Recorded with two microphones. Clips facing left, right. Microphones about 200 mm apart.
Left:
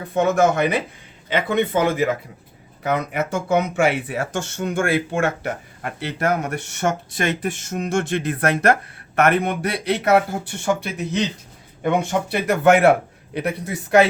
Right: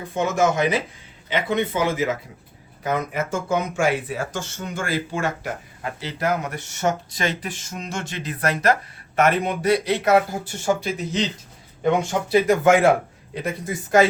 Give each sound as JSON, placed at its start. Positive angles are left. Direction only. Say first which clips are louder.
{"t": 0.1, "sound": "speech", "louder": "left 3 dB", "side_deg": 60}
{"t": 2.8, "sound": "speech", "louder": "left 2 dB", "side_deg": 65}